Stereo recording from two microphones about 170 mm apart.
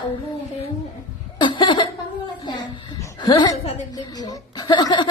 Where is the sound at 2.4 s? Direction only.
25° left (ahead or behind).